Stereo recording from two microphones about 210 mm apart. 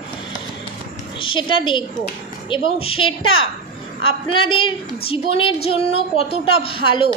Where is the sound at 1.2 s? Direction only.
25° left (ahead or behind).